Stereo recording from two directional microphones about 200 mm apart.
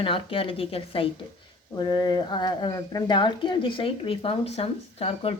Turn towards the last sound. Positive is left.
turn(degrees=30)  # may be behind; listen again after turning